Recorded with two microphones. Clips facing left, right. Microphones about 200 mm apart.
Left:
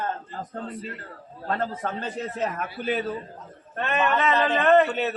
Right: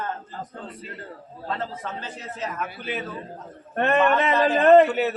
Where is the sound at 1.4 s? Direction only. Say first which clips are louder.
Left 3 dB; 50° left (ahead or behind).